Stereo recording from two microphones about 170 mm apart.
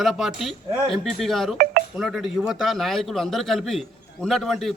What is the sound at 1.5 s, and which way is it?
Speech, 60° right (ahead or behind).